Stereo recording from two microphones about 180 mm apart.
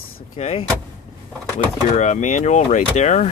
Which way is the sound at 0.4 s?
35° left (ahead or behind).